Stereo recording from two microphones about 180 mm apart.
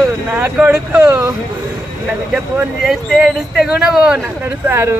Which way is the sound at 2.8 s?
Centre (ahead or behind).